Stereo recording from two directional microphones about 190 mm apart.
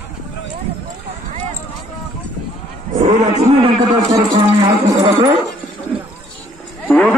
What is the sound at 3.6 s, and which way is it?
Speech, 20° right (ahead or behind).